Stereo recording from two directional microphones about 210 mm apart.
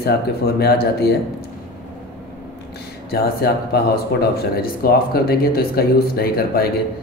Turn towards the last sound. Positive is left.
turn(degrees=45)  # may be behind; listen again after turning